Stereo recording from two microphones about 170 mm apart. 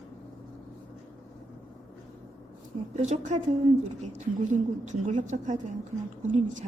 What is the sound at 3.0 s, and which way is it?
A woman's voice, 45° right (ahead or behind).